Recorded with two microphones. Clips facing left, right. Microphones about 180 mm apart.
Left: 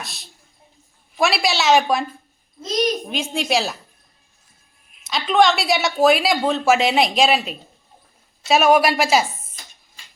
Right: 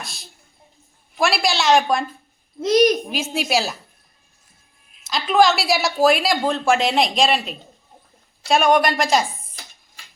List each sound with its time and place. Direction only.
0.0 s speech: centre (ahead or behind)
2.6 s a child's voice: 70° right (ahead or behind)
3.1 s speech: 5° right (ahead or behind)
5.0 s speech: centre (ahead or behind)